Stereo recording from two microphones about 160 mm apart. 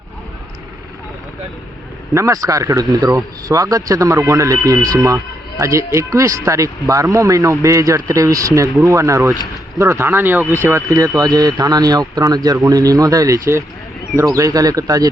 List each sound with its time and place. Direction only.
2.1 s speech: 20° right (ahead or behind)